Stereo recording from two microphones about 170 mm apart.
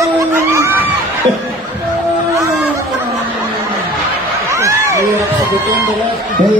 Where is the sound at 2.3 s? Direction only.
15° right (ahead or behind).